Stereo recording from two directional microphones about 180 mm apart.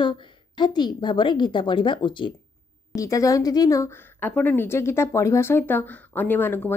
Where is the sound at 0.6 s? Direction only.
25° left (ahead or behind).